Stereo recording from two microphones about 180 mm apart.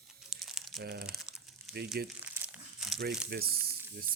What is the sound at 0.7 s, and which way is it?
Speech, 65° right (ahead or behind).